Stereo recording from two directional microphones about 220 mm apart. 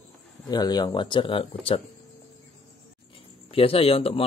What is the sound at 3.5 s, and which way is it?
Speech, 25° left (ahead or behind).